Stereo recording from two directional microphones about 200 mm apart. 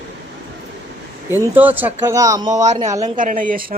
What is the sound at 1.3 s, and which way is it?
Speech, 10° right (ahead or behind).